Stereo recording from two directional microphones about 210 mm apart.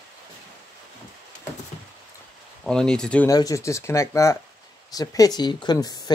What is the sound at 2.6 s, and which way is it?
Speech, 5° left (ahead or behind).